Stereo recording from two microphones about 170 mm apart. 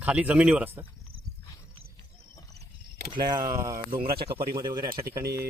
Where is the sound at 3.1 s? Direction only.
25° right (ahead or behind).